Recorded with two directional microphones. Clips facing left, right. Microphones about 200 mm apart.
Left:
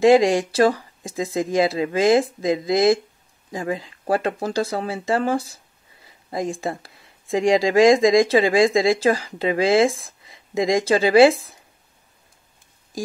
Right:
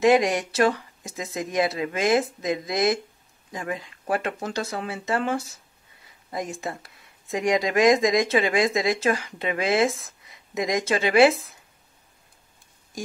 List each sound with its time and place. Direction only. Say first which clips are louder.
0.0 s speech: left 5 dB; 30° left (ahead or behind)